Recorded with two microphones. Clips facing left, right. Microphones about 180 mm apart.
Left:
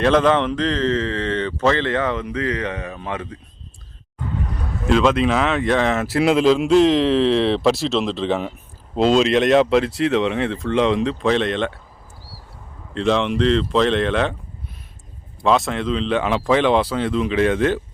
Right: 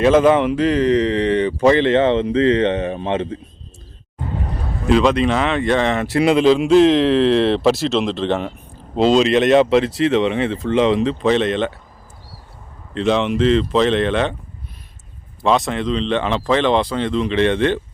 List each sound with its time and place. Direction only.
0.0 s a man's voice: 5° right (ahead or behind); by 3.3 s 25° right (ahead or behind)
4.9 s speech: centre (ahead or behind)
12.9 s speech: centre (ahead or behind)
15.4 s speech: centre (ahead or behind)